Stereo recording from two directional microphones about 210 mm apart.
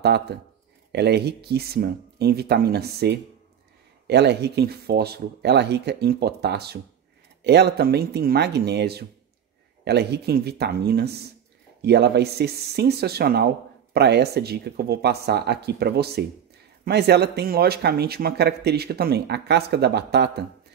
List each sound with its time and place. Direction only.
0.3 s speech: 50° right (ahead or behind)